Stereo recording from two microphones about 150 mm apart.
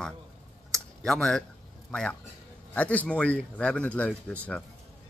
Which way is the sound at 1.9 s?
10° left (ahead or behind).